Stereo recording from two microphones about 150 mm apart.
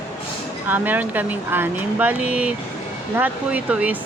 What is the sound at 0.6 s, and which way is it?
Speech, 10° right (ahead or behind).